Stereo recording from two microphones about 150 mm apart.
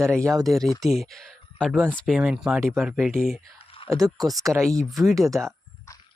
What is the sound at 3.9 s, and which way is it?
Speech, 25° right (ahead or behind).